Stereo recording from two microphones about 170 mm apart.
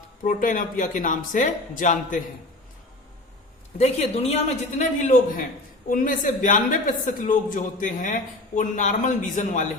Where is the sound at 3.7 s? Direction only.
40° left (ahead or behind).